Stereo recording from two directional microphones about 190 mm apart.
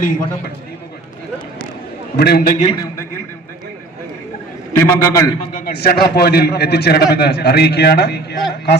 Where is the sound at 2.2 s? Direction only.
55° left (ahead or behind).